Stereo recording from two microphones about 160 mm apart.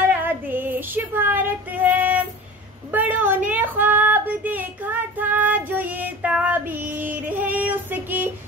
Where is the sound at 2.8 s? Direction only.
10° right (ahead or behind).